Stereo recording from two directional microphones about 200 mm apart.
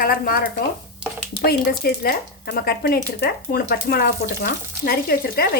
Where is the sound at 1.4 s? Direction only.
55° left (ahead or behind).